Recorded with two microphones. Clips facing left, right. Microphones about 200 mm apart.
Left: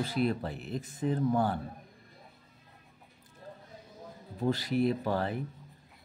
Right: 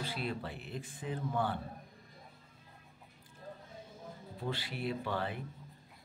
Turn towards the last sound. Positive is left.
turn(degrees=40)  # may be behind; listen again after turning